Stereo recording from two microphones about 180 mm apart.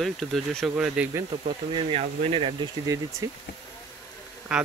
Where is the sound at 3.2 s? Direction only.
15° right (ahead or behind).